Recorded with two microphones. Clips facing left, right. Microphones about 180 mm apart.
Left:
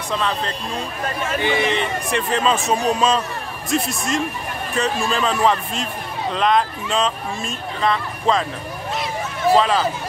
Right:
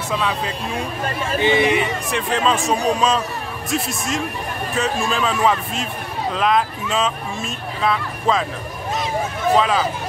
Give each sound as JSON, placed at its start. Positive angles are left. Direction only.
{"t": 0.1, "sound": "speech", "side_deg": -5}
{"t": 1.4, "sound": "speech", "side_deg": -20}
{"t": 1.8, "sound": "speech", "side_deg": 0}
{"t": 9.5, "sound": "speech", "side_deg": 0}